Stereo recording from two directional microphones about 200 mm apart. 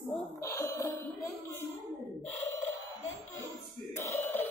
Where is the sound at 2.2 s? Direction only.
10° left (ahead or behind).